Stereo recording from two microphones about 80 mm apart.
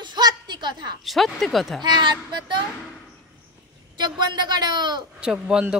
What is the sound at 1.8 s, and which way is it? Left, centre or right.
Speech, right.